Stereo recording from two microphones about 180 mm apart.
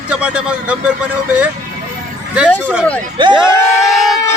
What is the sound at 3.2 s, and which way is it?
Speech, 25° right (ahead or behind).